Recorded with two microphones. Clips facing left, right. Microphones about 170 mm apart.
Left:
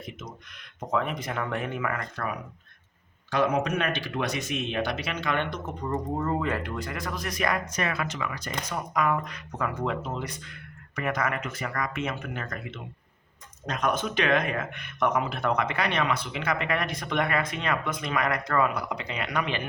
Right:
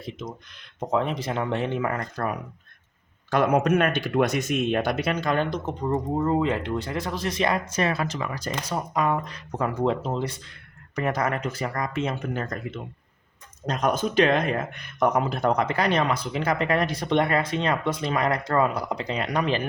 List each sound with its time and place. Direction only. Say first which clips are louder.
0.0 s a sound: right 5 dB; 30° right (ahead or behind)
0.8 s speech: right 3 dB; 30° right (ahead or behind)
3.2 s speech: right 4 dB; 50° right (ahead or behind); by 19.6 s 35° right (ahead or behind)